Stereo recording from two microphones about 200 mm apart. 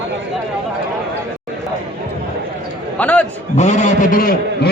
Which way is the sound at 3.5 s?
35° left (ahead or behind).